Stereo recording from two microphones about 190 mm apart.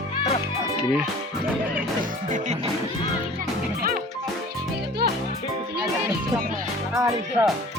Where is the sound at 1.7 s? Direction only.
45° right (ahead or behind).